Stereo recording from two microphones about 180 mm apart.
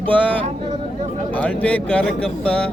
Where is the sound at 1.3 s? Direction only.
10° left (ahead or behind).